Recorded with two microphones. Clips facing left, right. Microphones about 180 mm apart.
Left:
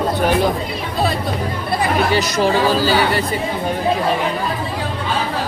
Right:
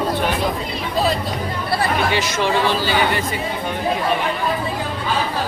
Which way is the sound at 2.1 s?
40° left (ahead or behind).